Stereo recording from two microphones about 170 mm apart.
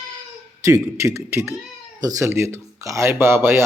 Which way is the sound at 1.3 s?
15° right (ahead or behind).